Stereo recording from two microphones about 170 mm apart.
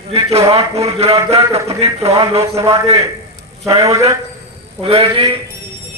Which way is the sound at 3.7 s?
20° right (ahead or behind).